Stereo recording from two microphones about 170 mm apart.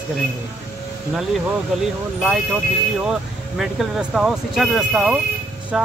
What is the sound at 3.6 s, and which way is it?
Speech, 5° right (ahead or behind).